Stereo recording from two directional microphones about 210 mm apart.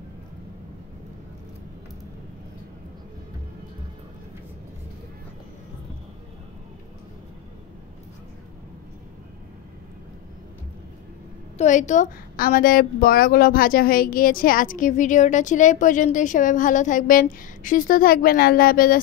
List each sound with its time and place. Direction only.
11.5 s a woman's voice: 35° left (ahead or behind)